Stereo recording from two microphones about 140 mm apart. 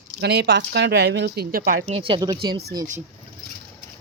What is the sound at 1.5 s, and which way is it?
Speech, 90° right.